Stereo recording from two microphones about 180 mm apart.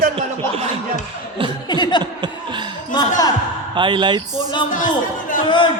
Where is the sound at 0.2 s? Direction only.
35° right (ahead or behind).